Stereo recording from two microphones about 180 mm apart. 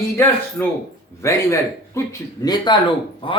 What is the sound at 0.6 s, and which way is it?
A man's voice, 10° left (ahead or behind).